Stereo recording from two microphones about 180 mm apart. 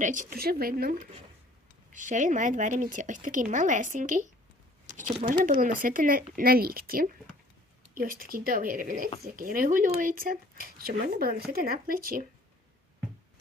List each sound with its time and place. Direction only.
0.0 s speech: 45° right (ahead or behind)
5.3 s speech: 50° right (ahead or behind)